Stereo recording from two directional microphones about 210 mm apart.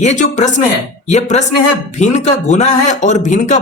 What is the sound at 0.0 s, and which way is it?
Speech, 35° left (ahead or behind).